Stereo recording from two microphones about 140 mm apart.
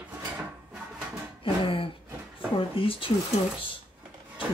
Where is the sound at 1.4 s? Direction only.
40° left (ahead or behind).